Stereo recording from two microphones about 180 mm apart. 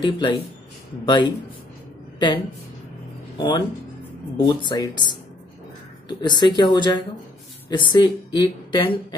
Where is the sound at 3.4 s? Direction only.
25° left (ahead or behind).